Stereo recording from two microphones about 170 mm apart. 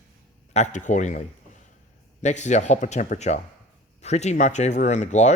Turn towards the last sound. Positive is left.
turn(degrees=45)  # may be behind; listen again after turning